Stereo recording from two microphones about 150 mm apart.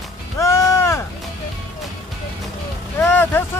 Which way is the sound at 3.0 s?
15° left (ahead or behind).